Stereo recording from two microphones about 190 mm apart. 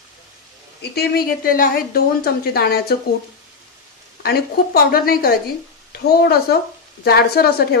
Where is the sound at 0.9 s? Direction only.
50° left (ahead or behind).